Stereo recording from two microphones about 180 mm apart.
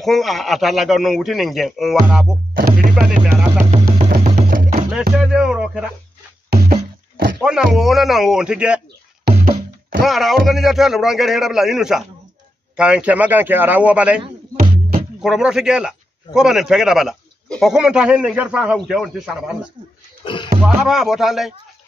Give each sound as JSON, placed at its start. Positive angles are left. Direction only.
{"t": 0.0, "sound": "a man's voice", "side_deg": 0}
{"t": 2.5, "sound": "music", "side_deg": -50}
{"t": 2.9, "sound": "music", "side_deg": -5}
{"t": 3.5, "sound": "music", "side_deg": -40}
{"t": 5.1, "sound": "music", "side_deg": -5}
{"t": 6.5, "sound": "music", "side_deg": -55}
{"t": 7.3, "sound": "a man's voice", "side_deg": 0}
{"t": 9.2, "sound": "music", "side_deg": -55}
{"t": 10.0, "sound": "a man's voice", "side_deg": 0}
{"t": 15.2, "sound": "a man's voice", "side_deg": -5}
{"t": 20.2, "sound": "speech", "side_deg": 25}
{"t": 20.6, "sound": "a man's voice", "side_deg": 0}